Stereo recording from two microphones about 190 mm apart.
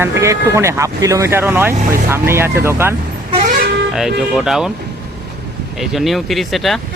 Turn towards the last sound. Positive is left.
turn(degrees=0)  # may be behind; listen again after turning